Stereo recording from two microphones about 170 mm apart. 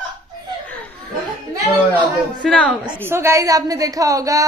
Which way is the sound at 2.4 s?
5° left (ahead or behind).